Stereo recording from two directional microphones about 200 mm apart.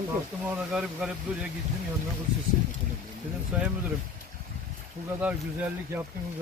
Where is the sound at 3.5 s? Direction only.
5° right (ahead or behind).